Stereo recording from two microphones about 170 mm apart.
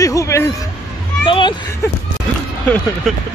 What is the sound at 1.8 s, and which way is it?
Speech, 15° left (ahead or behind).